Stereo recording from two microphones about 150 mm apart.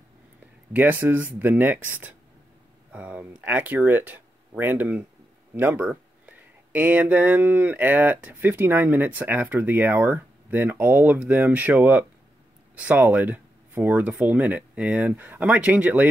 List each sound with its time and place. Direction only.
0.7 s speech: 10° right (ahead or behind)